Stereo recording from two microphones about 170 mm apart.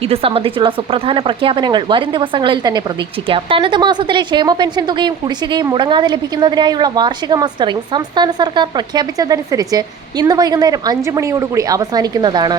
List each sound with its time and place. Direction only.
0.1 s speech: 35° right (ahead or behind)